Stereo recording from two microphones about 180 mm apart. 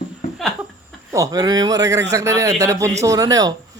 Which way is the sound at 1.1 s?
20° right (ahead or behind).